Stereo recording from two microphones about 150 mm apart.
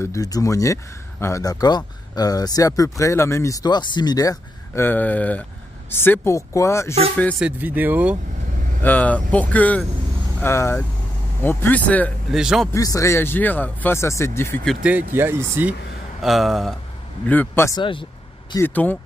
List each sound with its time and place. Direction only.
0.0 s speech: 20° left (ahead or behind)
4.8 s speech: 10° left (ahead or behind)
7.3 s speech: 10° right (ahead or behind)
8.8 s speech: 10° left (ahead or behind)
12.3 s speech: 5° right (ahead or behind)
12.7 s speech: 20° left (ahead or behind)
14.6 s speech: centre (ahead or behind)
15.1 s speech: 15° right (ahead or behind)
16.2 s speech: centre (ahead or behind)
17.3 s speech: 15° left (ahead or behind)
17.7 s speech: 35° left (ahead or behind)
18.6 s speech: 10° left (ahead or behind)